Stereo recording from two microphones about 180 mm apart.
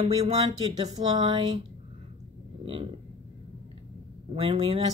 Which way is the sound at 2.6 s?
30° right (ahead or behind).